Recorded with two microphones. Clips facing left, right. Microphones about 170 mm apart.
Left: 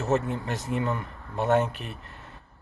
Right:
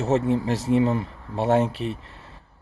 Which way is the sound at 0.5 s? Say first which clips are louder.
Right 9 dB; 90° right.